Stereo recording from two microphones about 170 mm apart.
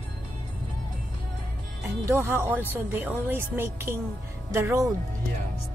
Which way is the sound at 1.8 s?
15° right (ahead or behind).